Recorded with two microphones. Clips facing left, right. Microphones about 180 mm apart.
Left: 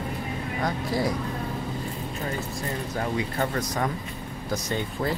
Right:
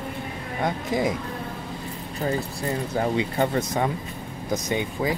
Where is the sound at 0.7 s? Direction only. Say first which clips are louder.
Right 3 dB; 20° right (ahead or behind).